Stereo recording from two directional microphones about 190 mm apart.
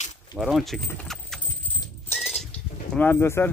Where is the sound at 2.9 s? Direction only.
10° left (ahead or behind).